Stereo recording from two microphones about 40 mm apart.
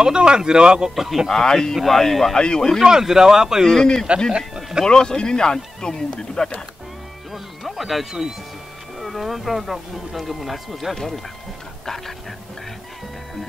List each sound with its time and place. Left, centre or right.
0.0 s speech: right
0.9 s speech: centre
1.3 s speech: centre
2.3 s speech: centre
2.8 s speech: centre
3.6 s speech: centre
4.3 s a sound: centre
4.8 s speech: centre
7.6 s speech: centre